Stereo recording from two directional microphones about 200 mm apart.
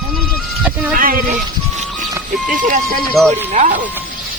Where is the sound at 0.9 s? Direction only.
45° right (ahead or behind).